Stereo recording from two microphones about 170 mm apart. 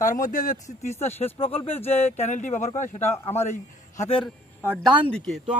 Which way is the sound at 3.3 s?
40° left (ahead or behind).